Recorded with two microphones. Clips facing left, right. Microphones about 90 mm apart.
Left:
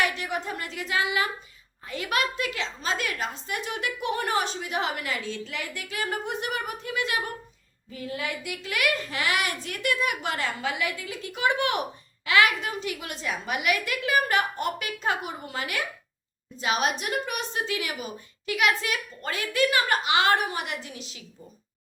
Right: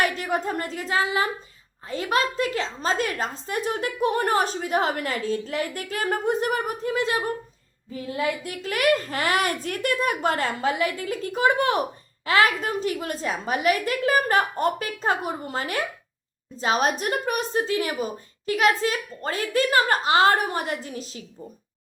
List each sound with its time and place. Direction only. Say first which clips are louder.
0.0 s a woman's voice: right 4 dB; 40° right (ahead or behind)